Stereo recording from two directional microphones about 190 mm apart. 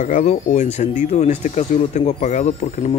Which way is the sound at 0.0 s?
40° left (ahead or behind).